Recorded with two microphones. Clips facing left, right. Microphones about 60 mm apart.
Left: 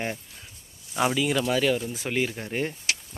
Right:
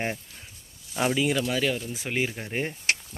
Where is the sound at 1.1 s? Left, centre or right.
Centre.